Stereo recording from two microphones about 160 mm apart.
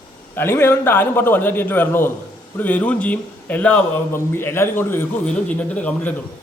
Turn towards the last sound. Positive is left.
turn(degrees=10)  # may be behind; listen again after turning